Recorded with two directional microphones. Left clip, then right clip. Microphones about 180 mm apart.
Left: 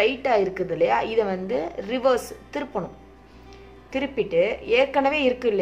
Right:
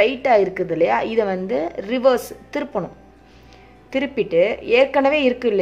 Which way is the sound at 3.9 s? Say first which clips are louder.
Right 4 dB; 30° right (ahead or behind).